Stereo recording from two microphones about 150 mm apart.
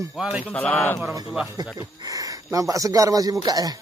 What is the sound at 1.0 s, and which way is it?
Speech, 20° right (ahead or behind).